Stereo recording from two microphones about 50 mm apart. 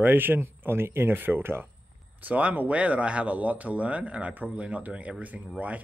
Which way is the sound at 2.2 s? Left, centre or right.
Right.